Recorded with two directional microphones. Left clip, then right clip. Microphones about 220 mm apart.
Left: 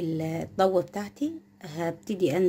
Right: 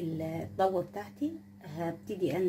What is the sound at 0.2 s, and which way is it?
Speech, 45° left (ahead or behind).